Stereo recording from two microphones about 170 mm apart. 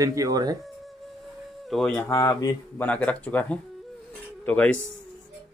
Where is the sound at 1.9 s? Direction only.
20° left (ahead or behind).